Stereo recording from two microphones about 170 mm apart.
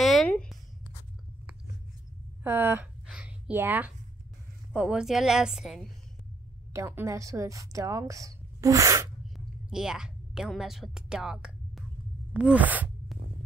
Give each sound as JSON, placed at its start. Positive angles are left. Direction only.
{"t": 0.0, "sound": "a sound", "side_deg": 0}
{"t": 2.4, "sound": "a sound", "side_deg": -10}
{"t": 4.7, "sound": "a woman's voice", "side_deg": -5}
{"t": 6.7, "sound": "a woman's voice", "side_deg": -15}
{"t": 9.7, "sound": "a woman's voice", "side_deg": -5}
{"t": 12.4, "sound": "sigh", "side_deg": -10}